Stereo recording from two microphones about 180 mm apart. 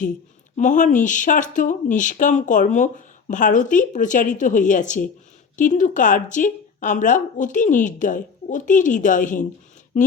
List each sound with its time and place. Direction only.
0.5 s speech: 45° left (ahead or behind)